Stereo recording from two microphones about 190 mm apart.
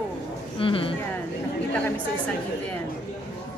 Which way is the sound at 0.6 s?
30° left (ahead or behind).